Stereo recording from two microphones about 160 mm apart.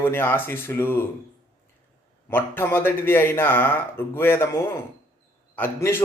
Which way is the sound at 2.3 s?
15° left (ahead or behind).